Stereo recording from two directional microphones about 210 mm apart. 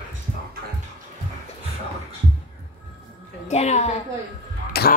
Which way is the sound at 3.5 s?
30° left (ahead or behind).